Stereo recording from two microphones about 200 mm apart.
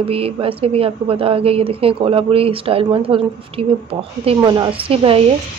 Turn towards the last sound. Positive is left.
turn(degrees=-25)  # may be behind; listen again after turning